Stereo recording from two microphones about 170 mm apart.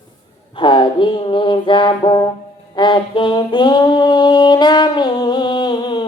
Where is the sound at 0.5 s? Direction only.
30° left (ahead or behind).